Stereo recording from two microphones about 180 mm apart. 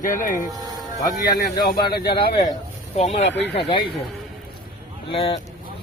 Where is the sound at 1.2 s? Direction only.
60° left (ahead or behind).